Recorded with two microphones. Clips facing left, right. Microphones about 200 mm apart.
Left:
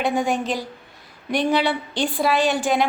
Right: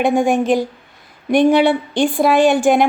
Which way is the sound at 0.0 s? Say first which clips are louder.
Right 7 dB; 50° right (ahead or behind).